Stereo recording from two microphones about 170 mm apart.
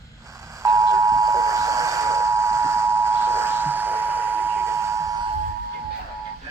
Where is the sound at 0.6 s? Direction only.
20° right (ahead or behind).